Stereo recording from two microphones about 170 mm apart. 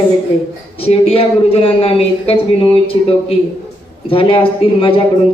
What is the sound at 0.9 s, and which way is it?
A man's voice, 35° left (ahead or behind).